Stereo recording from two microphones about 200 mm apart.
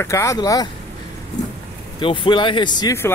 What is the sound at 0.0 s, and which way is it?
Speech, 15° left (ahead or behind).